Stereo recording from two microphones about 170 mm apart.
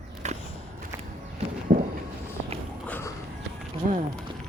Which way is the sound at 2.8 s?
10° left (ahead or behind).